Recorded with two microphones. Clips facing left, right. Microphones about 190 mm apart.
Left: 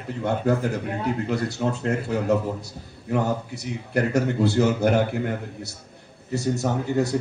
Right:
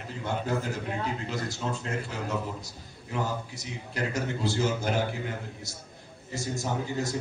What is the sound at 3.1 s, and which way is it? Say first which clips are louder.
A man's voice: left 8 dB; 60° left (ahead or behind).